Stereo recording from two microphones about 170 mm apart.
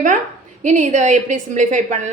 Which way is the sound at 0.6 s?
45° right (ahead or behind).